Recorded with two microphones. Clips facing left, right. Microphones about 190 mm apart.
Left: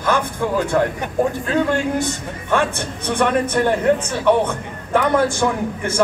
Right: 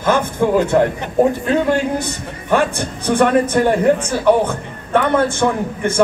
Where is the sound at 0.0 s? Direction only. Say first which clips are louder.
Right 4 dB; 20° right (ahead or behind).